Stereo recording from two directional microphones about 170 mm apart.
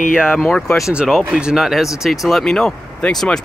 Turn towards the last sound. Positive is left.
turn(degrees=5)  # may be behind; listen again after turning